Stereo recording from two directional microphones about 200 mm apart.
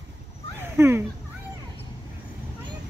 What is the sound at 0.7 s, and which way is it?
Speech, 10° right (ahead or behind).